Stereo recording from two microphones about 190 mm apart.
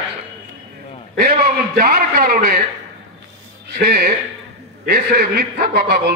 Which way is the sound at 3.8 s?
55° right (ahead or behind).